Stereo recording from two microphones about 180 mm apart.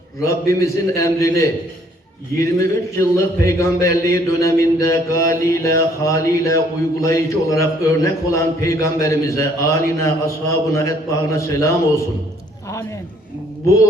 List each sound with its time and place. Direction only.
0.2 s a man's voice: 15° left (ahead or behind)